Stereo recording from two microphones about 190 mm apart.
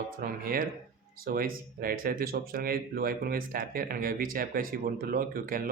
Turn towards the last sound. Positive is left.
turn(degrees=-50)  # may be behind; listen again after turning